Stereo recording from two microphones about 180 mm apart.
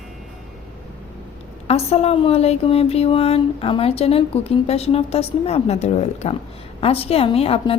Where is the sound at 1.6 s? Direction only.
35° left (ahead or behind).